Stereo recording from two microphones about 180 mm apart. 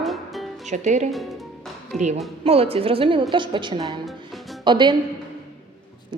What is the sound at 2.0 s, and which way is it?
A woman's voice, 40° right (ahead or behind).